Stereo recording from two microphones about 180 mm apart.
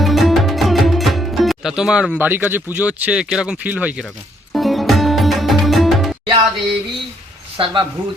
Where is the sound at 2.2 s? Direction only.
10° right (ahead or behind).